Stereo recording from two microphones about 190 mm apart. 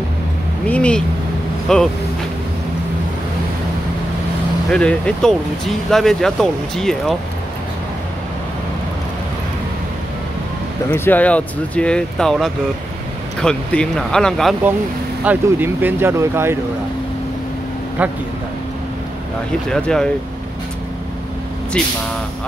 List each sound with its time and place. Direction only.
0.7 s speech: 5° left (ahead or behind)
4.6 s speech: 5° left (ahead or behind)
10.9 s speech: 10° left (ahead or behind)
15.2 s speech: 10° right (ahead or behind)
19.7 s speech: 5° left (ahead or behind)
21.8 s speech: 5° left (ahead or behind)